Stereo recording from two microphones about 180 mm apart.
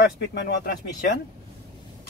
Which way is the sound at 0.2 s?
70° left (ahead or behind).